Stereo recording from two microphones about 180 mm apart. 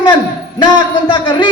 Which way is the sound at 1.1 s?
25° left (ahead or behind).